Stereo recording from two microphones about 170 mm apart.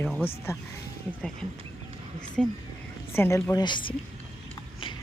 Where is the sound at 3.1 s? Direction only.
15° left (ahead or behind).